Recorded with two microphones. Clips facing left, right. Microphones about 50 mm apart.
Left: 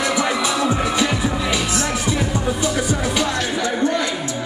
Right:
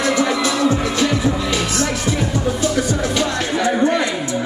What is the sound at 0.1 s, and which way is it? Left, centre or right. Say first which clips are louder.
Music: right 2 dB; centre.